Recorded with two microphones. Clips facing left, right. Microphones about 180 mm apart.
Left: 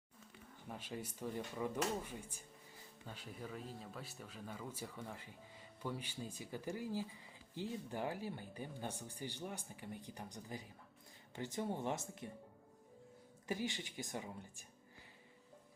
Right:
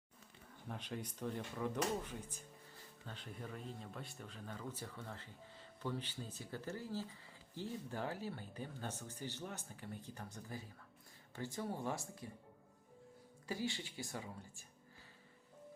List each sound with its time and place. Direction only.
0.7 s speech: 5° left (ahead or behind)
13.5 s speech: 15° left (ahead or behind)